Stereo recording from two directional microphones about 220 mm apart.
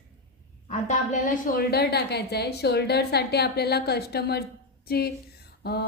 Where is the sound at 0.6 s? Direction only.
35° left (ahead or behind).